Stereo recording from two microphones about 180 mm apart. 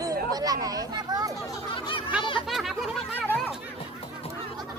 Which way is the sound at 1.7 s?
30° left (ahead or behind).